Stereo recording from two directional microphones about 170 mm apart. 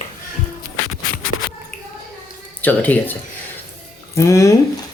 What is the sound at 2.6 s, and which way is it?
Speech, 10° left (ahead or behind).